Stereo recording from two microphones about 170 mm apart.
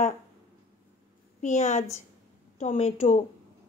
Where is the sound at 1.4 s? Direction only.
45° left (ahead or behind).